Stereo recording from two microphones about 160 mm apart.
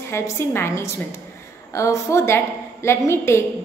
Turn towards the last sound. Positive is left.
turn(degrees=15)  # may be behind; listen again after turning